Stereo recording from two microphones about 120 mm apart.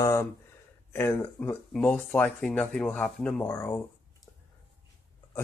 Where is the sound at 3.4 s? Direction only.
25° left (ahead or behind).